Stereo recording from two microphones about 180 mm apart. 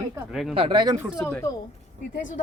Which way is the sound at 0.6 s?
25° right (ahead or behind).